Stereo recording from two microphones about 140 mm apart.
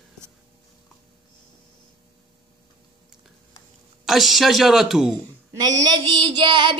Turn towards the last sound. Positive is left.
turn(degrees=-35)  # may be behind; listen again after turning